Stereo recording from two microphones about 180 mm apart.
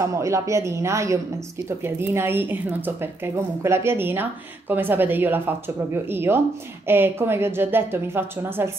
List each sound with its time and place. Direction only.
0.0 s speech: 15° right (ahead or behind)